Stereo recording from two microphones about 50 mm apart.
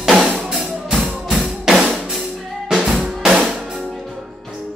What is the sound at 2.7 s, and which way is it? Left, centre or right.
Drum, centre.